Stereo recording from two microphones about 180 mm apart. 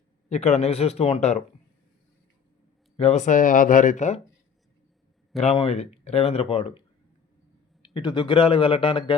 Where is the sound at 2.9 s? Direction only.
35° left (ahead or behind).